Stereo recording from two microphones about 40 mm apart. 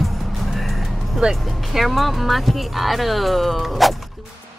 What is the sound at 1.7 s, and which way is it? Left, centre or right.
Speech, centre.